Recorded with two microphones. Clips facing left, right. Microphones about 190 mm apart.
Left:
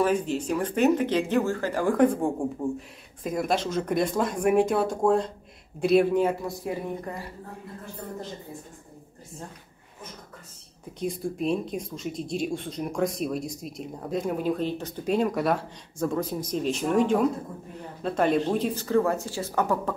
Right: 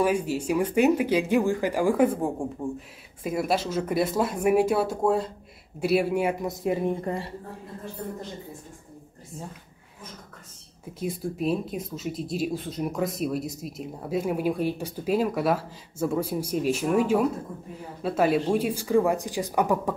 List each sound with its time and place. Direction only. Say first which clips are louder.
0.0 s speech: even; 10° right (ahead or behind)
6.6 s speech: right 5 dB; 25° right (ahead or behind)
11.0 s speech: even; 5° right (ahead or behind)